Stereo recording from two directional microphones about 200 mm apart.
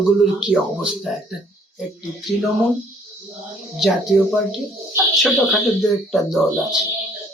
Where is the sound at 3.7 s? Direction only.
Centre (ahead or behind).